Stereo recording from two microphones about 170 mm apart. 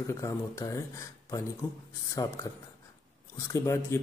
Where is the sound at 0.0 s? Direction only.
15° left (ahead or behind).